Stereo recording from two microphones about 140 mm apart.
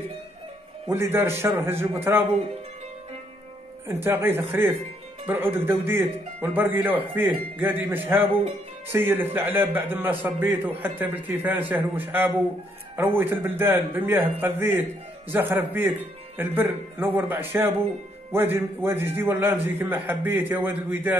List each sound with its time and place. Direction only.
0.8 s a man's voice: 20° right (ahead or behind)
3.8 s a man's voice: 15° right (ahead or behind)